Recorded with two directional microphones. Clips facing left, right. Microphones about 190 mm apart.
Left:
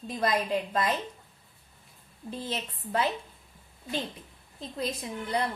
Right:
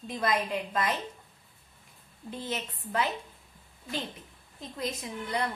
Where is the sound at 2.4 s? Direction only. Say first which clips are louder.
Right 2 dB; 30° left (ahead or behind).